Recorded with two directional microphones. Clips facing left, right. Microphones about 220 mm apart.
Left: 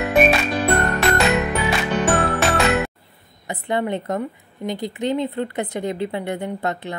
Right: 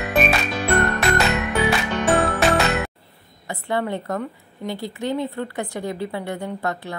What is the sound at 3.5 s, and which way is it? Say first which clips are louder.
A woman's voice: left 2 dB; 20° left (ahead or behind).